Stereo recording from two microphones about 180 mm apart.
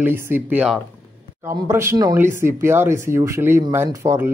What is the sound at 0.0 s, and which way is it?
Speech, 10° right (ahead or behind).